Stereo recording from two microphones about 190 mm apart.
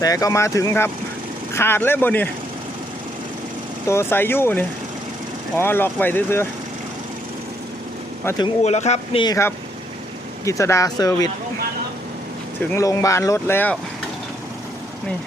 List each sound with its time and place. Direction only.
0.0 s speech: 20° left (ahead or behind)
3.8 s speech: 15° left (ahead or behind)
8.2 s speech: 15° left (ahead or behind)
8.6 s speech: 35° left (ahead or behind)
9.2 s speech: 20° left (ahead or behind)
12.7 s speech: 15° left (ahead or behind)